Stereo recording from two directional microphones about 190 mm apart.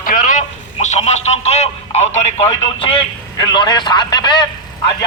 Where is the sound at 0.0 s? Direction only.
45° left (ahead or behind); by 4.4 s 25° left (ahead or behind).